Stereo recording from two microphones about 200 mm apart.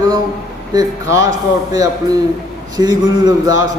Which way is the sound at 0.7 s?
20° right (ahead or behind).